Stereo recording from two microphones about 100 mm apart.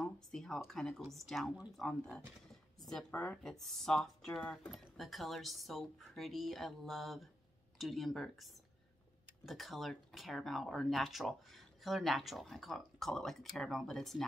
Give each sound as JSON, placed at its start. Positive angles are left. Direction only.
{"t": 0.0, "sound": "speech", "side_deg": 5}
{"t": 2.5, "sound": "a sound", "side_deg": 0}
{"t": 3.1, "sound": "speech", "side_deg": 20}
{"t": 3.4, "sound": "speech", "side_deg": 0}
{"t": 9.5, "sound": "speech", "side_deg": 0}